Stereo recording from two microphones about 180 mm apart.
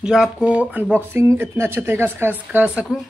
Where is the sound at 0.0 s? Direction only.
5° right (ahead or behind).